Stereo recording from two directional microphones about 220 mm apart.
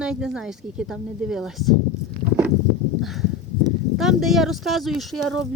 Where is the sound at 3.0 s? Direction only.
Centre (ahead or behind).